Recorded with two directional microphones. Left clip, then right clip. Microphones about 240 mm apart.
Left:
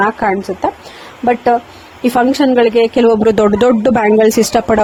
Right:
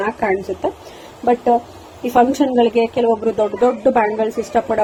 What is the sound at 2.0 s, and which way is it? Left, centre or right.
A woman's voice, left.